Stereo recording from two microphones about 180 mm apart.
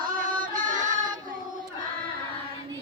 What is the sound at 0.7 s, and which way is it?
Child singing, 45° right (ahead or behind).